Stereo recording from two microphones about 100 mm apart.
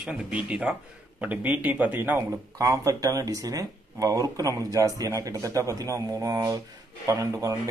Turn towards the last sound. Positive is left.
turn(degrees=-35)  # may be behind; listen again after turning